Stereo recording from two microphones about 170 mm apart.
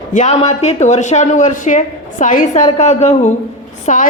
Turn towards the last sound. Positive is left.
turn(degrees=45)  # may be behind; listen again after turning